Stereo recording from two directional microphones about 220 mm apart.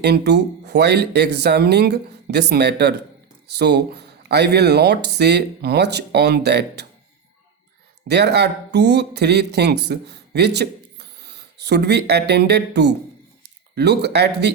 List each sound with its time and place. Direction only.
0.0 s speech: 50° right (ahead or behind)
8.0 s speech: 50° right (ahead or behind)